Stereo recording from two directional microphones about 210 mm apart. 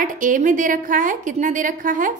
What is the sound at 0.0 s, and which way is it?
A woman's voice, 40° right (ahead or behind).